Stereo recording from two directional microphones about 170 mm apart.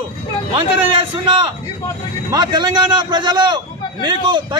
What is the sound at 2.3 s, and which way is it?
A man's voice, 25° right (ahead or behind).